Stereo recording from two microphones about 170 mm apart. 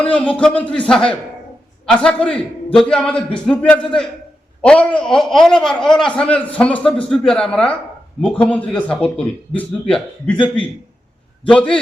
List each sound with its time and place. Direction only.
0.0 s a man's voice: 5° left (ahead or behind)
10.3 s a man's voice: 30° left (ahead or behind)
11.4 s a man's voice: 5° left (ahead or behind)